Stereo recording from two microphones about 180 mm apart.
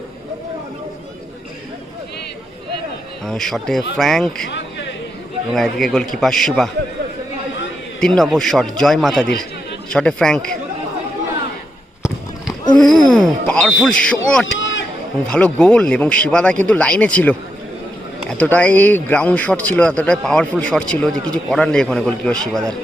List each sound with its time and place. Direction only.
3.2 s a man's voice: centre (ahead or behind)
5.5 s a man's voice: centre (ahead or behind)
8.0 s a man's voice: centre (ahead or behind)
12.8 s a man's voice: centre (ahead or behind)
14.4 s a sound: 90° left
15.3 s a man's voice: 5° left (ahead or behind)